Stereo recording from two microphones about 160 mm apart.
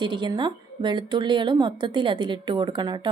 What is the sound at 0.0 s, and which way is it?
A woman's voice, 30° right (ahead or behind).